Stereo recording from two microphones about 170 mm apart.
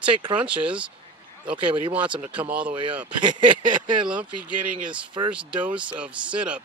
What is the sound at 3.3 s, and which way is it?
Speech, 25° right (ahead or behind).